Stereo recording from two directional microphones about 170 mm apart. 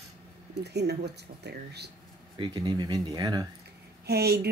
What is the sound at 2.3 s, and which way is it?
Speech, 25° right (ahead or behind).